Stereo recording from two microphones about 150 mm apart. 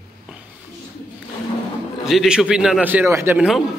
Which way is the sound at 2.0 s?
5° right (ahead or behind).